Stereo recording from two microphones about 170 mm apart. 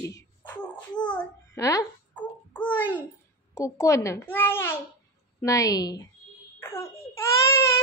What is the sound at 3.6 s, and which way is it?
A child's voice, 20° left (ahead or behind).